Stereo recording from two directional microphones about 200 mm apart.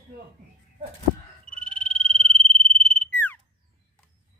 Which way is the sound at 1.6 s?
5° left (ahead or behind).